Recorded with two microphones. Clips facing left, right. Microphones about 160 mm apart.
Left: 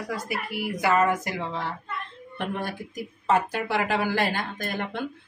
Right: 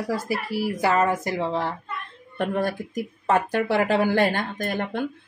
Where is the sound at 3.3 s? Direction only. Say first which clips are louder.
Right 3 dB; 55° right (ahead or behind).